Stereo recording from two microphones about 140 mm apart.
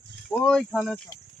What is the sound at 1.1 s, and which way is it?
Cricket, 25° left (ahead or behind).